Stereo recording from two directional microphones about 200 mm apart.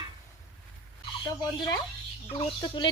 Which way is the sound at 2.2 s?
25° left (ahead or behind).